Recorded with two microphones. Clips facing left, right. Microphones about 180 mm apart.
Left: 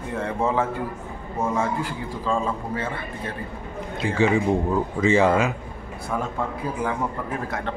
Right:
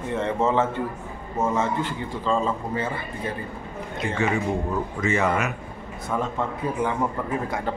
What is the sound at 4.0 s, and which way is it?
Speech, 30° left (ahead or behind).